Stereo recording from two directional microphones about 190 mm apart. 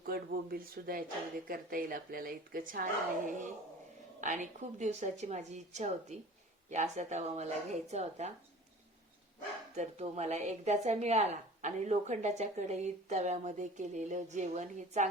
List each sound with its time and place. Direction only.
0.0 s a woman's voice: 50° right (ahead or behind)
9.7 s a woman's voice: 35° right (ahead or behind)